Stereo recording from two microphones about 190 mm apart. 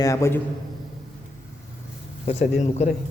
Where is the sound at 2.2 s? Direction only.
35° left (ahead or behind).